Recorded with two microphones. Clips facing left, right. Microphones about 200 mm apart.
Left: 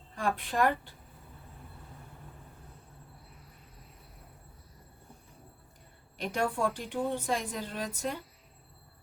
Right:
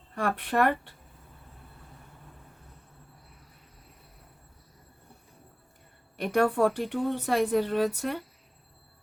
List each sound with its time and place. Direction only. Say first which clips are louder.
0.2 s speech: right 3 dB; 65° right (ahead or behind)
6.1 s speech: right 7 dB; 60° right (ahead or behind)